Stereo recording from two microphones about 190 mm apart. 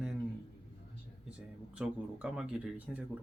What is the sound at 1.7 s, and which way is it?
Speech, 5° right (ahead or behind).